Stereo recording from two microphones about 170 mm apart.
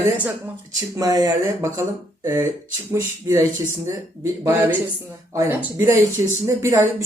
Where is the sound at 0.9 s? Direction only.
20° right (ahead or behind).